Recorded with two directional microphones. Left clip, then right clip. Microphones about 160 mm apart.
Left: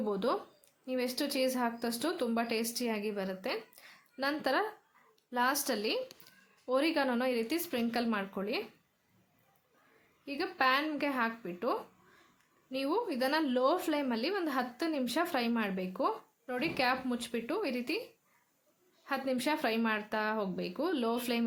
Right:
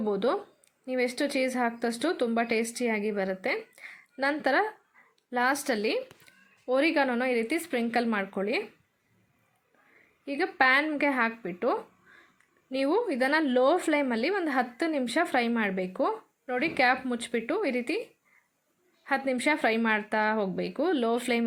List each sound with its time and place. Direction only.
0.0 s a woman's voice: 10° right (ahead or behind)
10.2 s a woman's voice: 15° right (ahead or behind)
19.0 s a woman's voice: 15° right (ahead or behind)